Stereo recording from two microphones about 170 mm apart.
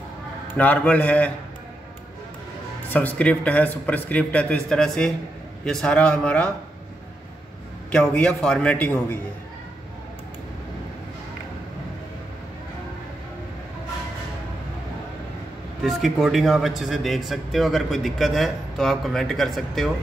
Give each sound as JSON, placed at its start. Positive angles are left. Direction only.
{"t": 0.6, "sound": "speech", "side_deg": 10}
{"t": 2.9, "sound": "a man's voice", "side_deg": 10}
{"t": 7.9, "sound": "a man's voice", "side_deg": 5}
{"t": 15.8, "sound": "a man's voice", "side_deg": 0}